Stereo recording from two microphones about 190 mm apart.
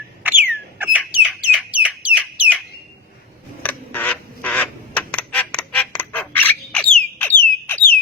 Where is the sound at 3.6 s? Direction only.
10° left (ahead or behind).